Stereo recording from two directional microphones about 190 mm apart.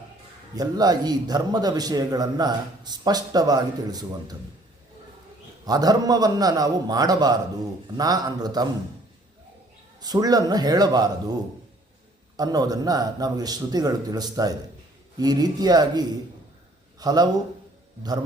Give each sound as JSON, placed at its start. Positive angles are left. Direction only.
{"t": 0.5, "sound": "a man's voice", "side_deg": -20}
{"t": 5.6, "sound": "a man's voice", "side_deg": -20}
{"t": 10.0, "sound": "a man's voice", "side_deg": -20}
{"t": 12.4, "sound": "a man's voice", "side_deg": -20}